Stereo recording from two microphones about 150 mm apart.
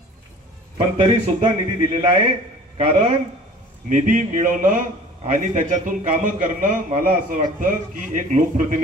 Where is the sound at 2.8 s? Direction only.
50° right (ahead or behind).